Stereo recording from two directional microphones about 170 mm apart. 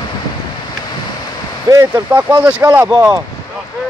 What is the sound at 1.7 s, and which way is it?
Speech, 15° right (ahead or behind).